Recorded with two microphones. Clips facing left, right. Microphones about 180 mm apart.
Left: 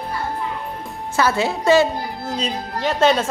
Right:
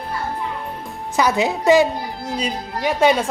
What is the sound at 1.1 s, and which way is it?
Speech, 15° right (ahead or behind).